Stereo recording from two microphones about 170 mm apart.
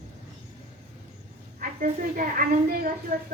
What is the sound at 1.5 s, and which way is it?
A woman's voice, 50° right (ahead or behind).